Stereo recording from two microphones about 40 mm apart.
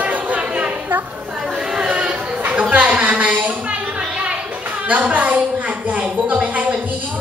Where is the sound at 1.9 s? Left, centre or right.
Right.